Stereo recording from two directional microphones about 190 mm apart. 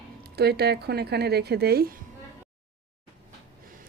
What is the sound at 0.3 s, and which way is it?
Speech, 60° right (ahead or behind).